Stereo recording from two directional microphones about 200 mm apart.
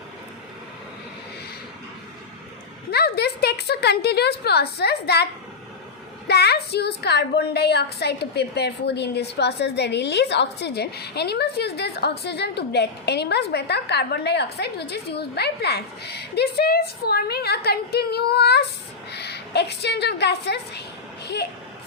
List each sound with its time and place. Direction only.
2.9 s a woman's voice: 55° left (ahead or behind)